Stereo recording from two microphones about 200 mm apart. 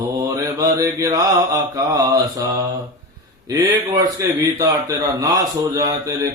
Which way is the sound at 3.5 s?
15° right (ahead or behind).